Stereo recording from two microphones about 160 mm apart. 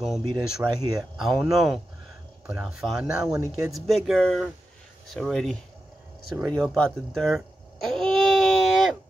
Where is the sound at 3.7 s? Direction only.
Centre (ahead or behind).